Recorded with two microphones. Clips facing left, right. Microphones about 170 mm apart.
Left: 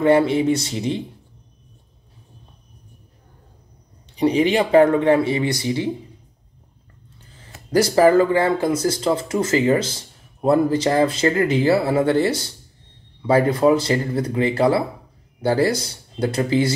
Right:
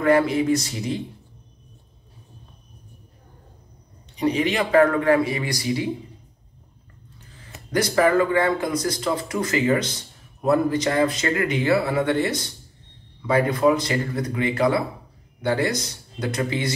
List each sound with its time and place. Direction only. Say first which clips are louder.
0.0 s speech: left 3 dB; 30° left (ahead or behind)
4.2 s speech: left 4 dB; 30° left (ahead or behind)
7.7 s speech: left 5 dB; 35° left (ahead or behind)